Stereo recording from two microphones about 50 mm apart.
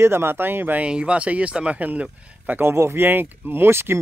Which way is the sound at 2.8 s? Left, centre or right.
Right.